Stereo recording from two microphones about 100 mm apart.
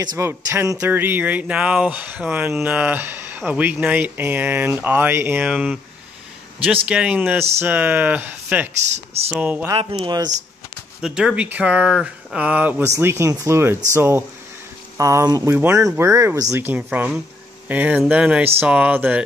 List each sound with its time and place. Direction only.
0.2 s speech: 25° right (ahead or behind)
5.5 s speech: 10° right (ahead or behind)
6.9 s speech: 10° right (ahead or behind)
8.9 s speech: 90° right
9.3 s speech: 15° right (ahead or behind)
9.9 s speech: 40° right (ahead or behind)
11.0 s speech: 5° right (ahead or behind)
12.8 s speech: 30° right (ahead or behind)
16.5 s speech: 20° right (ahead or behind)